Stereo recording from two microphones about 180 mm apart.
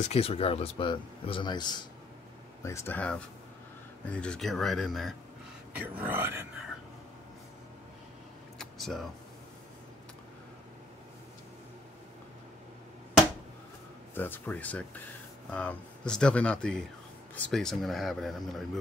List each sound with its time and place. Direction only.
0.0 s speech: 35° left (ahead or behind); by 5.1 s centre (ahead or behind)
5.8 s speech: 10° right (ahead or behind)
8.5 s a sound: centre (ahead or behind)
14.1 s speech: 10° left (ahead or behind)